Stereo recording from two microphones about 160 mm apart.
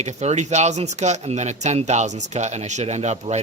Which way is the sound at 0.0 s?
45° right (ahead or behind).